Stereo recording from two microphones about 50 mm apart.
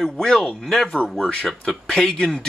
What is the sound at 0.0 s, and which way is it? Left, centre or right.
Speech, centre.